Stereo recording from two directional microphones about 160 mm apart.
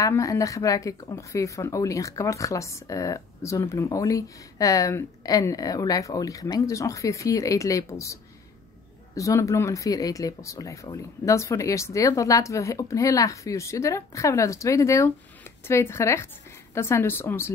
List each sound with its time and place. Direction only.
0.0 s a woman's voice: 20° left (ahead or behind)